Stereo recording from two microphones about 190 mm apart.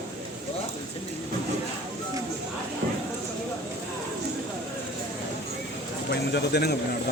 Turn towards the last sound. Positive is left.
turn(degrees=60)  # may be behind; listen again after turning